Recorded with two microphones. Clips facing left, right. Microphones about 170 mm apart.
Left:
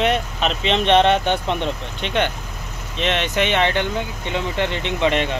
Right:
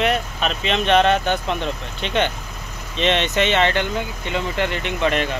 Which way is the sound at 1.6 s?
15° left (ahead or behind).